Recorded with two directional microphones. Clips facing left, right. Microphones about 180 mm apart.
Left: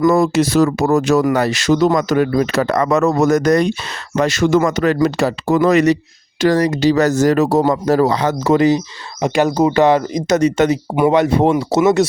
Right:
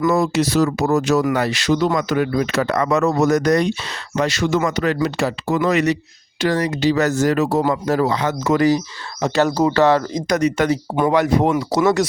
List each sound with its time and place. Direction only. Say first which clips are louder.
0.0 s speech: left 4 dB; 50° left (ahead or behind)
9.2 s speech: left 2 dB; 15° left (ahead or behind)